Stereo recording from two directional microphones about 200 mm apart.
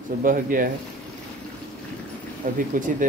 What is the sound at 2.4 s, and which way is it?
Speech, 45° right (ahead or behind).